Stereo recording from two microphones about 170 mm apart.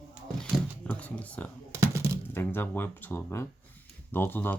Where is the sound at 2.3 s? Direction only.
10° left (ahead or behind).